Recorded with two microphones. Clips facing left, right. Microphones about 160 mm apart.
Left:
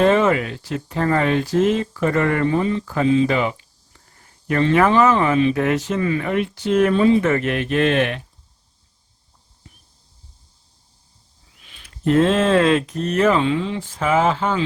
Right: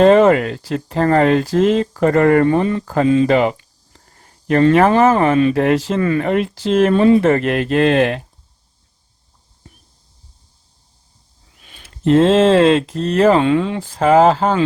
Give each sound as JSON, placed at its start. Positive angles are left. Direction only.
{"t": 0.0, "sound": "speech", "side_deg": -35}
{"t": 5.5, "sound": "speech", "side_deg": -35}
{"t": 6.0, "sound": "speech", "side_deg": -50}
{"t": 7.2, "sound": "speech", "side_deg": -35}
{"t": 11.8, "sound": "speech", "side_deg": -30}
{"t": 13.4, "sound": "speech", "side_deg": -55}
{"t": 13.8, "sound": "speech", "side_deg": -35}